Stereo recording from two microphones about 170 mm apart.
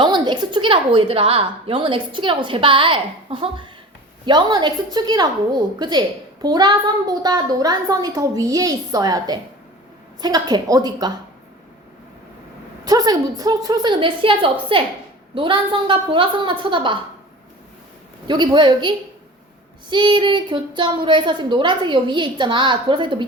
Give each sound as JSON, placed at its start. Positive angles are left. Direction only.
{"t": 0.0, "sound": "a woman's voice", "side_deg": -25}
{"t": 12.8, "sound": "a woman's voice", "side_deg": -20}
{"t": 18.3, "sound": "a woman's voice", "side_deg": -25}